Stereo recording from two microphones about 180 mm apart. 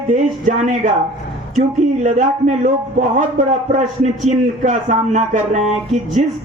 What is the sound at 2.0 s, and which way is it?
A man's voice, 40° right (ahead or behind).